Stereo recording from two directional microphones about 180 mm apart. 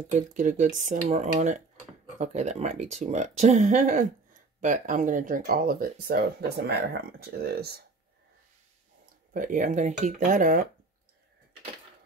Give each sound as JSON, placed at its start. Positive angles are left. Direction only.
{"t": 0.1, "sound": "speech", "side_deg": -45}
{"t": 9.3, "sound": "speech", "side_deg": -45}